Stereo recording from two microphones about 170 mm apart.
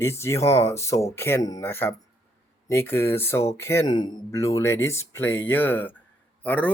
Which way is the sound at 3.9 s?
25° left (ahead or behind).